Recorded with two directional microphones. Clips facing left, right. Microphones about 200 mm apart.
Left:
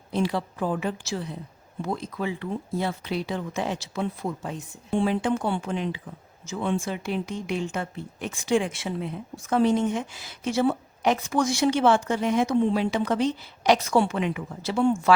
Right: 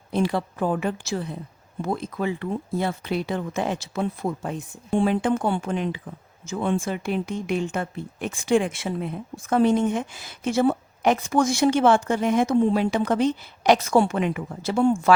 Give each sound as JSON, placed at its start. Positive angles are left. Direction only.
{"t": 0.1, "sound": "speech", "side_deg": -55}